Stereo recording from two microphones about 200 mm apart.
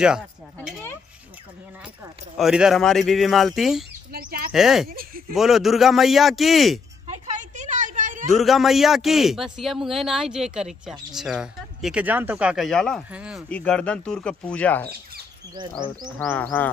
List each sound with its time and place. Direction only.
2.3 s speech: centre (ahead or behind)
4.1 s bird: 45° right (ahead or behind)
4.5 s speech: centre (ahead or behind)
4.8 s a sound: 45° right (ahead or behind)
5.3 s speech: centre (ahead or behind)
7.5 s a sound: 40° right (ahead or behind)
8.3 s speech: centre (ahead or behind)
13.5 s speech: 5° left (ahead or behind)
15.5 s speech: 20° right (ahead or behind)
16.2 s speech: 5° left (ahead or behind)